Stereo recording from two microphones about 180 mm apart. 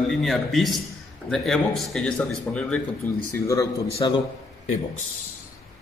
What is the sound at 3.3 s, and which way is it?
Speech, 15° left (ahead or behind).